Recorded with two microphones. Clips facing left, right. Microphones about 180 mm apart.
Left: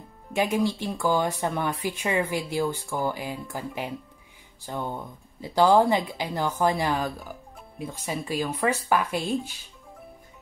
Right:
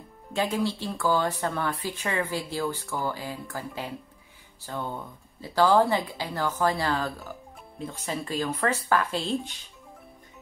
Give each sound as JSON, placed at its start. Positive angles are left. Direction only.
{"t": 0.3, "sound": "speech", "side_deg": 15}